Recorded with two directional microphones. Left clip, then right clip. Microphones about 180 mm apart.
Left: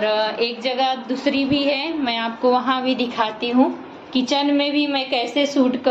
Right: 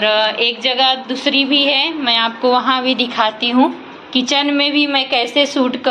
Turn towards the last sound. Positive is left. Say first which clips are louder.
# right 3 dB
turn(degrees=0)  # may be behind; listen again after turning